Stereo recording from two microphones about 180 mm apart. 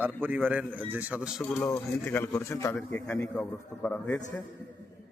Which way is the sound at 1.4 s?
15° left (ahead or behind).